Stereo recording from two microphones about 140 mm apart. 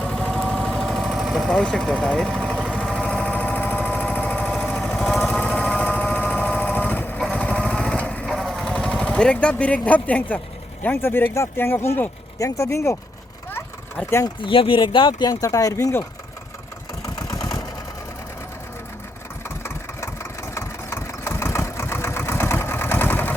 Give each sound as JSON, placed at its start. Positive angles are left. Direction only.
{"t": 0.0, "sound": "vehicle", "side_deg": 5}
{"t": 5.9, "sound": "a sound", "side_deg": 10}
{"t": 7.2, "sound": "lawn mower", "side_deg": 10}
{"t": 8.3, "sound": "sewing machine", "side_deg": 0}
{"t": 10.8, "sound": "speech", "side_deg": 15}
{"t": 13.5, "sound": "vehicle", "side_deg": 10}
{"t": 14.4, "sound": "speech", "side_deg": 40}
{"t": 17.2, "sound": "vehicle", "side_deg": 25}
{"t": 20.6, "sound": "vehicle", "side_deg": 20}